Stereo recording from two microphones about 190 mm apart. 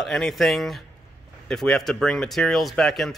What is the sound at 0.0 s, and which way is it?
Speech, centre (ahead or behind).